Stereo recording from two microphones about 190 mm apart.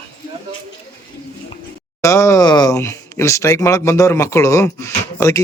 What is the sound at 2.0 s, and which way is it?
Speech, 15° left (ahead or behind).